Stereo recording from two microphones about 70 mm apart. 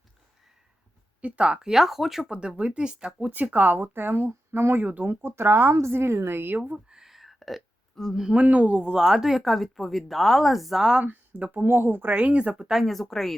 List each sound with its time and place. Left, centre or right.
1.2 s speech: centre; by 6.6 s right
6.7 s speech: centre
11.0 s speech: right; by 13.3 s centre